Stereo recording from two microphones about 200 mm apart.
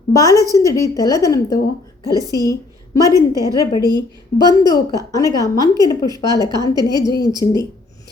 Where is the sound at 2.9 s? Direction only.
20° left (ahead or behind).